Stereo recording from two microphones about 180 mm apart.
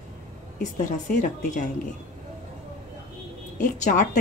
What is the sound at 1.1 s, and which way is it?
Speech, 45° left (ahead or behind).